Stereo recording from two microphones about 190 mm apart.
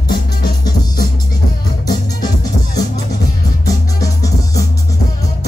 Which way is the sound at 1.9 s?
20° left (ahead or behind).